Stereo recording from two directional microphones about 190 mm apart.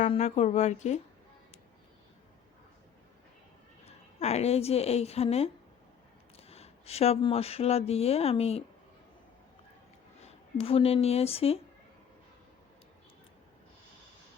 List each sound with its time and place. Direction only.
0.1 s speech: 35° left (ahead or behind)
3.8 s a woman's voice: 35° left (ahead or behind)
10.2 s speech: 30° left (ahead or behind)